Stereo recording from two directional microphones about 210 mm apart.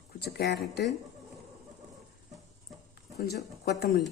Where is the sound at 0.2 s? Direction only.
50° left (ahead or behind).